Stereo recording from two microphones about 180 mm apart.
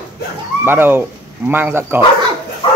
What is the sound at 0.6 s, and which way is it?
Speech, 10° right (ahead or behind).